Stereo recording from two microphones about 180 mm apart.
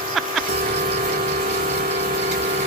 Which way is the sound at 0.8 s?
40° right (ahead or behind).